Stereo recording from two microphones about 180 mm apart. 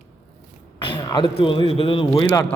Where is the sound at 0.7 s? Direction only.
25° left (ahead or behind).